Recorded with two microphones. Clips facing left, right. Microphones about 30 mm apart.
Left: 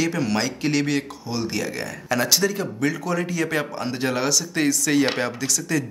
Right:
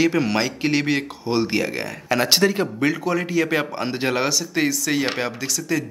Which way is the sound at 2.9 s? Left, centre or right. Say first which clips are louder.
Even; right.